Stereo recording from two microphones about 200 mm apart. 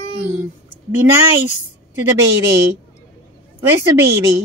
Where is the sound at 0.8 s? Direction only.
10° right (ahead or behind).